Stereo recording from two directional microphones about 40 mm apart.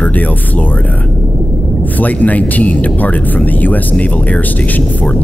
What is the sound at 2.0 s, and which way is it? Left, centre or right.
Speech, left.